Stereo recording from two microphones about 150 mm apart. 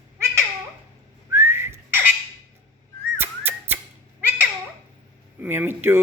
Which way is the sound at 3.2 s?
15° right (ahead or behind).